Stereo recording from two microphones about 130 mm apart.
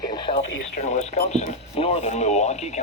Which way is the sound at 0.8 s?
65° left (ahead or behind).